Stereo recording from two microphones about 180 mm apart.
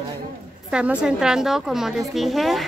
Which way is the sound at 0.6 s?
5° right (ahead or behind).